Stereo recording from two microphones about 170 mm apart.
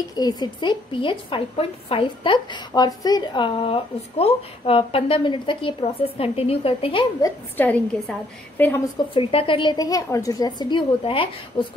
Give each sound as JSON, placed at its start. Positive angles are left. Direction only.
{"t": 0.1, "sound": "a woman's voice", "side_deg": 20}
{"t": 7.2, "sound": "a woman's voice", "side_deg": 15}
{"t": 9.1, "sound": "a woman's voice", "side_deg": 35}